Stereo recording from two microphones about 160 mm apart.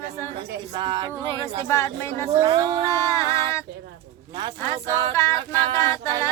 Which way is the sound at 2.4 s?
25° right (ahead or behind).